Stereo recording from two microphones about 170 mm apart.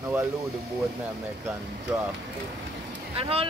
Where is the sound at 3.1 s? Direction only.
35° right (ahead or behind).